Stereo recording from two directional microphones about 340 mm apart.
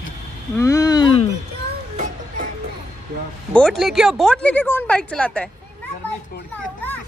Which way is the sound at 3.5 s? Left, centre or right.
Centre.